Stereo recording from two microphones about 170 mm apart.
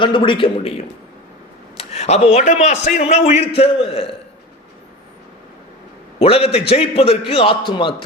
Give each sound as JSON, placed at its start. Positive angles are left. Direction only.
{"t": 0.0, "sound": "a man's voice", "side_deg": 30}
{"t": 6.1, "sound": "a man's voice", "side_deg": 35}